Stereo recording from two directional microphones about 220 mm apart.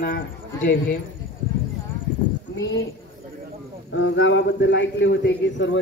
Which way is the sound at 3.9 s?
60° left (ahead or behind).